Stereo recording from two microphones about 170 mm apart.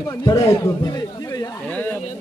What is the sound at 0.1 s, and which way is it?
A man's voice, 15° left (ahead or behind).